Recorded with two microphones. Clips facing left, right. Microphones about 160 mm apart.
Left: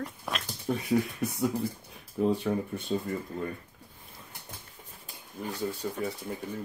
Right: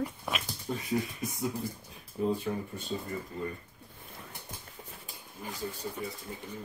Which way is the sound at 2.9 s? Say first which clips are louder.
Left 6 dB; 90° left.